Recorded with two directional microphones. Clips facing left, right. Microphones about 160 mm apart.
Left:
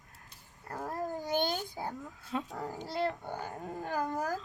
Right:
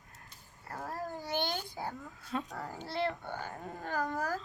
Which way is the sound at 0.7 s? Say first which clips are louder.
Left 3 dB; 15° left (ahead or behind).